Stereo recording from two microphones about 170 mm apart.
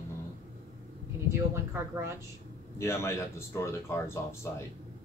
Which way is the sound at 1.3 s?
15° right (ahead or behind).